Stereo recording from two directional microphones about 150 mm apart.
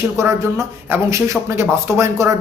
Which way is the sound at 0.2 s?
20° right (ahead or behind).